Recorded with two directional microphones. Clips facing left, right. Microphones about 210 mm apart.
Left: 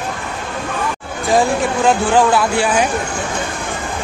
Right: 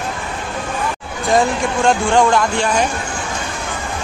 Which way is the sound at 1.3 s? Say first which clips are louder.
Left 1 dB; centre (ahead or behind).